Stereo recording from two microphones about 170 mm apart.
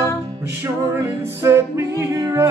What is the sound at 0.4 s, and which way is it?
Music, 15° right (ahead or behind).